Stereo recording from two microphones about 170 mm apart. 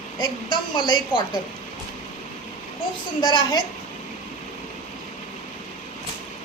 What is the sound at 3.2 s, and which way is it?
Speech, 30° left (ahead or behind).